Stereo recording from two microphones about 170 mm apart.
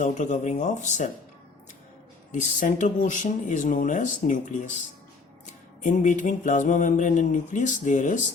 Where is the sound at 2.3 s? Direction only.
45° left (ahead or behind).